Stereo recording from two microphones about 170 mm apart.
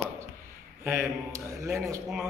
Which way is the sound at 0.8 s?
15° right (ahead or behind).